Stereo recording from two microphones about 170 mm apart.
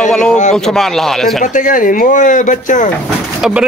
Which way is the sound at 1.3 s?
50° left (ahead or behind).